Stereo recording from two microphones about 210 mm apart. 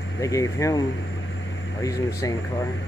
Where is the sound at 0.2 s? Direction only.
15° left (ahead or behind).